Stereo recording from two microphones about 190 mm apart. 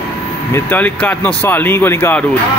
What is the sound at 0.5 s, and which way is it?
Speech, 10° left (ahead or behind).